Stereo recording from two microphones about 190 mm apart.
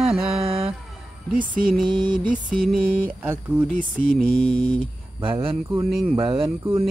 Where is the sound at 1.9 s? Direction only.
25° right (ahead or behind).